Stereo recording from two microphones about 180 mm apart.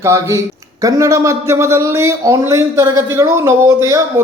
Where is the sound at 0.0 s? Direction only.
15° right (ahead or behind).